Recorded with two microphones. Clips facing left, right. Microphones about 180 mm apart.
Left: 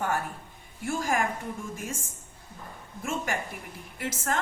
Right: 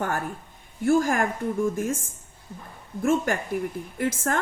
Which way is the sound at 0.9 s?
50° right (ahead or behind).